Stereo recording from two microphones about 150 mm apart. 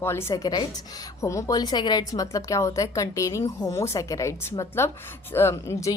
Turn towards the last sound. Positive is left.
turn(degrees=20)  # may be behind; listen again after turning